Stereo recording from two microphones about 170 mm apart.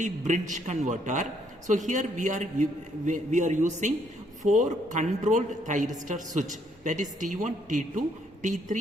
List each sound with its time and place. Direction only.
0.0 s speech: 45° right (ahead or behind)